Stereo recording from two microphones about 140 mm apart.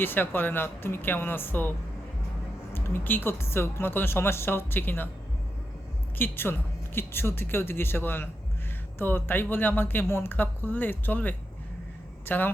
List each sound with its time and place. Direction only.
0.0 s speech: 15° left (ahead or behind)
2.7 s speech: 15° left (ahead or behind)
6.1 s speech: 15° left (ahead or behind)